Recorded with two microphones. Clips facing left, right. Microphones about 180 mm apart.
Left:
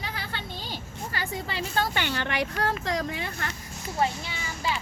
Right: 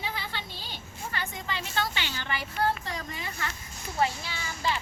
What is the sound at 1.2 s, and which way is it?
Speech, 35° left (ahead or behind).